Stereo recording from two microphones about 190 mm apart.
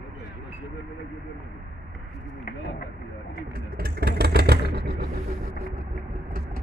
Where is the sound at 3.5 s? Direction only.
55° right (ahead or behind).